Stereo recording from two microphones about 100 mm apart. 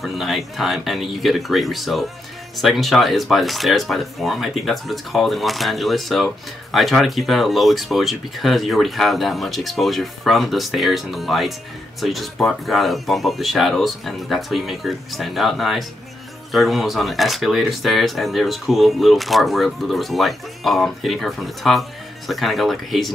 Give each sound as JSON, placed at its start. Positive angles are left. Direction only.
{"t": 0.0, "sound": "speech", "side_deg": 0}